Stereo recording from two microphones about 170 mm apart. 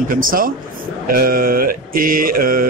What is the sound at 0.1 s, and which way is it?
A man's voice, 55° right (ahead or behind).